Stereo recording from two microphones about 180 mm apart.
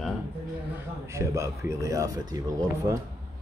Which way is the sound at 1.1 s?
15° right (ahead or behind).